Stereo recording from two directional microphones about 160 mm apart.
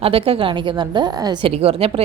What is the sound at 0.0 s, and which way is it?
Speech, 35° right (ahead or behind).